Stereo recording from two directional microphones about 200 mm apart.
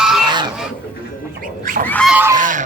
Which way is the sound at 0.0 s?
Centre (ahead or behind).